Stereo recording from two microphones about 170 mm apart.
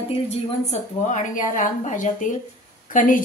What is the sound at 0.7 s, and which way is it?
A woman's voice, 45° left (ahead or behind).